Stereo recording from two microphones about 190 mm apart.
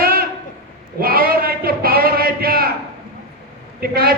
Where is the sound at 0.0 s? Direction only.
55° right (ahead or behind).